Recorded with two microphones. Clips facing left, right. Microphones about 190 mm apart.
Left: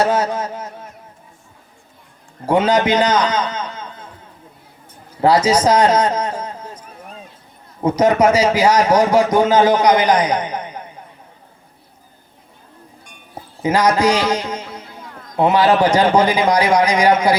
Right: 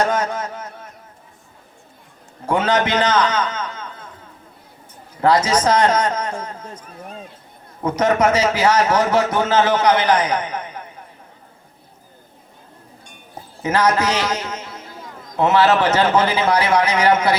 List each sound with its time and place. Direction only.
0.0 s a man's voice: 10° left (ahead or behind)
0.5 s a man's voice: 30° left (ahead or behind)
2.5 s a man's voice: 10° left (ahead or behind)
5.2 s a man's voice: 10° left (ahead or behind)
7.9 s a man's voice: 10° left (ahead or behind)
10.6 s a sound: 30° left (ahead or behind)
13.6 s a man's voice: 10° left (ahead or behind)